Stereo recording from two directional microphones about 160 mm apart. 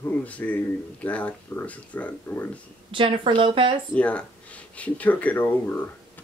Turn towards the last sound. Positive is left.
turn(degrees=10)  # may be behind; listen again after turning